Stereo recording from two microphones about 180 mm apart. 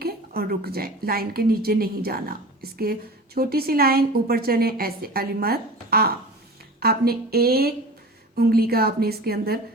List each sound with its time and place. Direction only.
0.0 s a woman's voice: 60° right (ahead or behind)